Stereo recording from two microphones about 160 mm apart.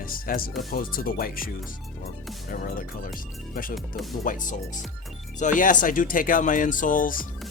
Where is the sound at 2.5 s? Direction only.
60° left (ahead or behind).